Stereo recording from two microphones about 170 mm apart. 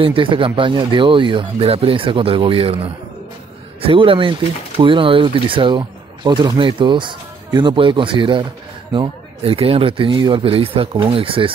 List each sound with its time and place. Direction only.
0.0 s speech: 30° right (ahead or behind)